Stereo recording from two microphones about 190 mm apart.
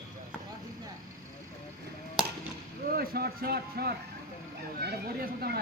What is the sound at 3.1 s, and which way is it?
Speech, 55° right (ahead or behind).